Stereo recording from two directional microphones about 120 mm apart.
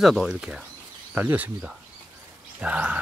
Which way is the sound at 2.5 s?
10° right (ahead or behind).